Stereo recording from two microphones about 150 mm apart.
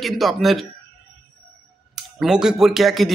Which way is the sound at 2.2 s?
5° right (ahead or behind).